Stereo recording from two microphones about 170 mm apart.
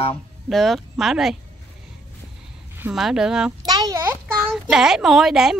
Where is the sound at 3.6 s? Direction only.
20° right (ahead or behind).